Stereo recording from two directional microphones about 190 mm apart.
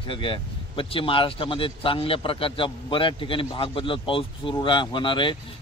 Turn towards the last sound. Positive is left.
turn(degrees=25)  # may be behind; listen again after turning